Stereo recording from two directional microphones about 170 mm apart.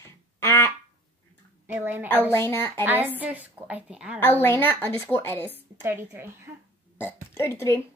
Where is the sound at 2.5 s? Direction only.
15° left (ahead or behind).